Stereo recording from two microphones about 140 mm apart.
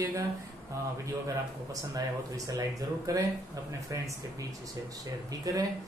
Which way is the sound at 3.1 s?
25° right (ahead or behind).